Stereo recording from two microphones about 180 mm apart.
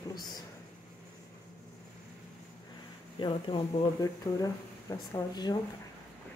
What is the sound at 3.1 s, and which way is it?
Speech, 25° left (ahead or behind).